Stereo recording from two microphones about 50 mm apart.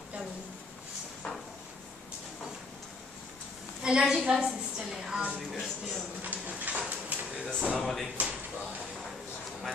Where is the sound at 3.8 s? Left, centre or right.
Centre.